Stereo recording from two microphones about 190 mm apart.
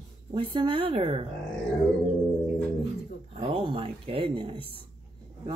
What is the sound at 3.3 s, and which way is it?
Speech, 30° right (ahead or behind).